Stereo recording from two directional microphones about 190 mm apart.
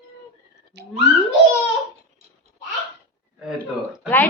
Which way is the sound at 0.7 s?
65° right (ahead or behind).